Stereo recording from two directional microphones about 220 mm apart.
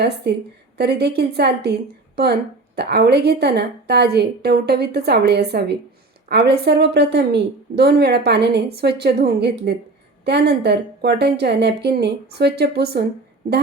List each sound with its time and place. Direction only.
0.3 s a woman's voice: 50° right (ahead or behind)